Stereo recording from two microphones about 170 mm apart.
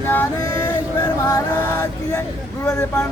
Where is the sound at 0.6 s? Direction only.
20° left (ahead or behind).